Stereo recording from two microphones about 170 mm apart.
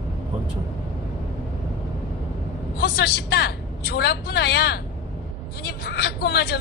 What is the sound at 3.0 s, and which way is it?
A woman's voice, 75° left (ahead or behind).